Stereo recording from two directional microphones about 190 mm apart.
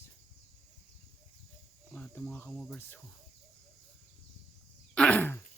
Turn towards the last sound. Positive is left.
turn(degrees=10)  # may be behind; listen again after turning